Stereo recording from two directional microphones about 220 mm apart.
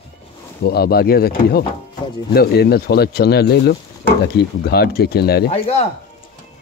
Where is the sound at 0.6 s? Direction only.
45° left (ahead or behind).